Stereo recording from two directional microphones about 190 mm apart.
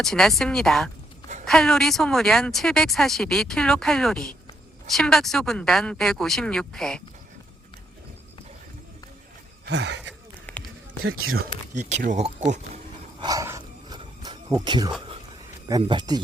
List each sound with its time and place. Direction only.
0.0 s speech: centre (ahead or behind)
9.6 s speech: 65° right (ahead or behind)
10.5 s run: 10° left (ahead or behind)
11.0 s speech: 90° right
11.7 s speech: 40° right (ahead or behind)
13.1 s a sound: 20° right (ahead or behind)
14.0 s music: 25° right (ahead or behind)
15.8 s speech: 25° right (ahead or behind)